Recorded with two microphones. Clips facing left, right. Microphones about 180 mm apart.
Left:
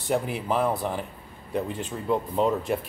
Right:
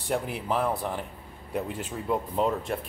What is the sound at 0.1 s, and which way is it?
Speech, centre (ahead or behind).